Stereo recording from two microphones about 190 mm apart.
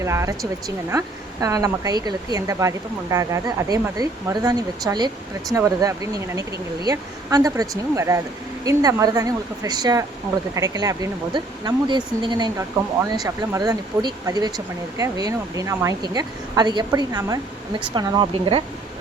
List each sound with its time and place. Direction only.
0.0 s speech: 15° right (ahead or behind)